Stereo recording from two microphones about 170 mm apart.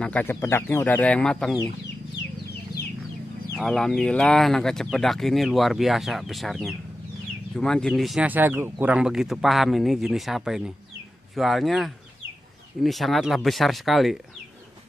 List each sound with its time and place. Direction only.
0.0 s speech: 10° left (ahead or behind)
3.5 s speech: centre (ahead or behind)